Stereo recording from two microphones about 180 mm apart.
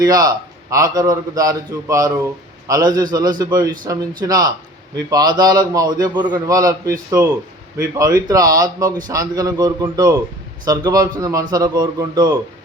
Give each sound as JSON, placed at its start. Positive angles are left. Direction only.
{"t": 0.0, "sound": "a man's voice", "side_deg": -20}